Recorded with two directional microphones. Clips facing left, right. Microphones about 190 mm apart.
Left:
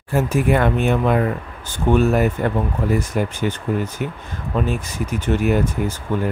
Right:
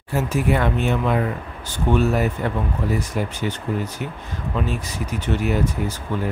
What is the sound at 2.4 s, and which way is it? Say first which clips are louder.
Speech: left 3 dB; 50° left (ahead or behind).